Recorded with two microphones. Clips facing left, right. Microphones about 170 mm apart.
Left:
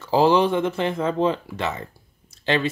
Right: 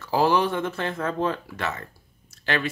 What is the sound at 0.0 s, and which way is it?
Speech, 20° left (ahead or behind).